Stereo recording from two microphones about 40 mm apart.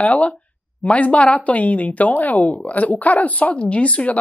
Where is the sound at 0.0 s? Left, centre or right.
Left.